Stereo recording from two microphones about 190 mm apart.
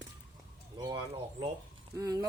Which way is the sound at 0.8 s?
20° right (ahead or behind).